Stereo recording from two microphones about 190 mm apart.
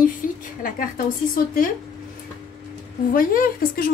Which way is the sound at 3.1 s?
45° left (ahead or behind).